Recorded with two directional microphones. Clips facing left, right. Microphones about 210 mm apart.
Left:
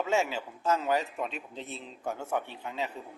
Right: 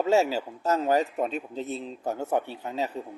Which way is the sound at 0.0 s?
40° right (ahead or behind).